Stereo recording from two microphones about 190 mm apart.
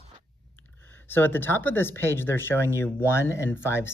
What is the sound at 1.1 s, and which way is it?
Speech, 10° left (ahead or behind).